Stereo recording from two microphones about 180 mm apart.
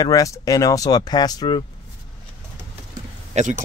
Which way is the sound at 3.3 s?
45° right (ahead or behind).